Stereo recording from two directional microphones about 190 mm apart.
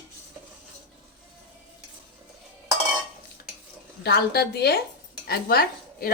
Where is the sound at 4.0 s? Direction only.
55° left (ahead or behind).